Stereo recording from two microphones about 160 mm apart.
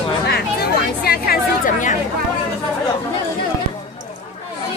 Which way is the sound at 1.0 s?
70° left (ahead or behind).